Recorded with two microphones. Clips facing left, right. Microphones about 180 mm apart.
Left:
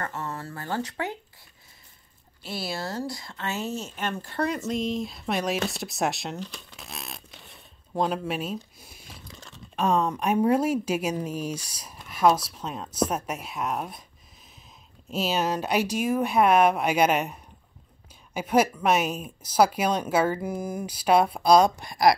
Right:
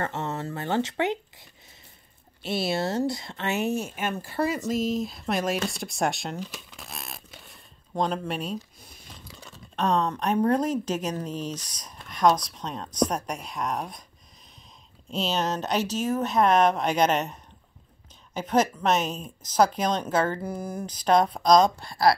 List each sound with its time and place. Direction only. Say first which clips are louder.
0.0 s speech: right 3 dB; 25° right (ahead or behind)
2.4 s speech: right 6 dB; 20° right (ahead or behind); by 8.5 s 5° left (ahead or behind)
9.8 s speech: left 1 dB; 10° left (ahead or behind)
15.0 s speech: left 1 dB; 5° left (ahead or behind)